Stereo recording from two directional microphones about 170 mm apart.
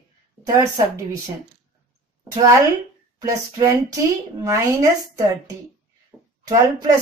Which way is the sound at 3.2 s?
20° right (ahead or behind).